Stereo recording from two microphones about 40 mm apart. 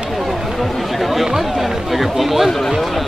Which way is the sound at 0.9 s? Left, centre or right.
Centre.